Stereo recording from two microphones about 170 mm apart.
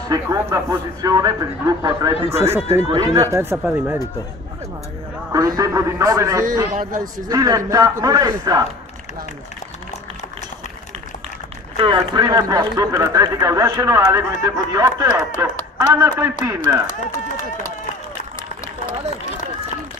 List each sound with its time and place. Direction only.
0.1 s speech: 20° right (ahead or behind)
2.2 s speech: 35° right (ahead or behind)
2.9 s speech: 25° right (ahead or behind)
3.6 s speech: 15° right (ahead or behind)
5.3 s speech: 20° right (ahead or behind)
6.7 s a man's voice: 50° right (ahead or behind)
7.2 s speech: 20° right (ahead or behind)
11.7 s speech: 30° right (ahead or behind); by 16.7 s 15° right (ahead or behind)